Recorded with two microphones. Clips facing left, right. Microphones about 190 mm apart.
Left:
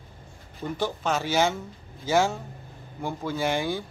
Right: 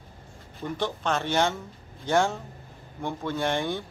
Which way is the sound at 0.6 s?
5° left (ahead or behind).